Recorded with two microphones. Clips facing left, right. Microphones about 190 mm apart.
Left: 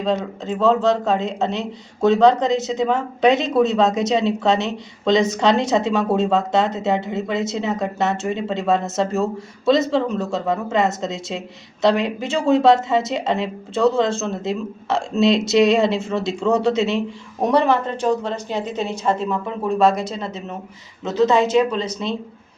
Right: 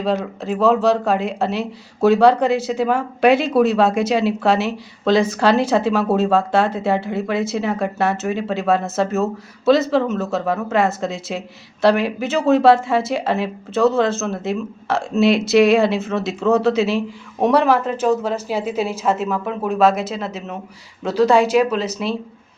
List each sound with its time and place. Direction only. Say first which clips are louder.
0.0 s a woman's voice: right 1 dB; 5° right (ahead or behind)